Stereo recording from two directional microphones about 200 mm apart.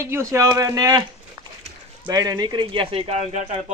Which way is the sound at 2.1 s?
20° right (ahead or behind).